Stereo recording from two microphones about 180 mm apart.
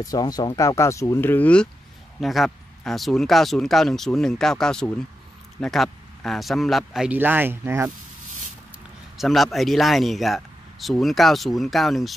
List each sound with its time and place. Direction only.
0.0 s speech: 20° left (ahead or behind); by 7.9 s 10° right (ahead or behind)
9.2 s speech: centre (ahead or behind)